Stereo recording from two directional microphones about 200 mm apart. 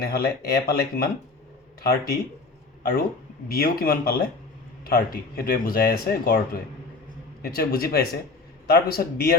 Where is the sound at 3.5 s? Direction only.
50° left (ahead or behind).